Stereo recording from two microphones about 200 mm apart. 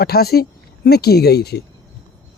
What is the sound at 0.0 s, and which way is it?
Speech, 50° left (ahead or behind).